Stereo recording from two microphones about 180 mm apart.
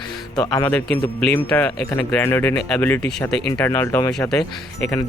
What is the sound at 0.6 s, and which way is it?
Speech, 5° left (ahead or behind).